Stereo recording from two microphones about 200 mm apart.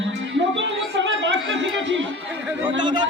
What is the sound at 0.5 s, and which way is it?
Chatter, 65° right (ahead or behind).